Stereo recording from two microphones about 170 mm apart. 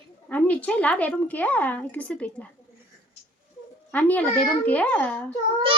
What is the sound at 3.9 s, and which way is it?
A woman's voice, 10° left (ahead or behind).